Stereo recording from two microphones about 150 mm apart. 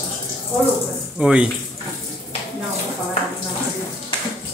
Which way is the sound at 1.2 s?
5° right (ahead or behind).